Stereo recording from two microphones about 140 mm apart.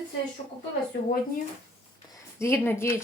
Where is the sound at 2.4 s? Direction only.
20° left (ahead or behind).